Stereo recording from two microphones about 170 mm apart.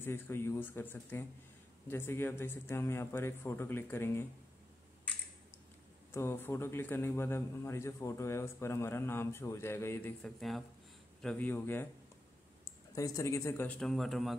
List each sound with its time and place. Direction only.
0.0 s a man's voice: 15° left (ahead or behind)
6.1 s a man's voice: 15° left (ahead or behind)
12.9 s a man's voice: 20° left (ahead or behind); by 14.3 s centre (ahead or behind)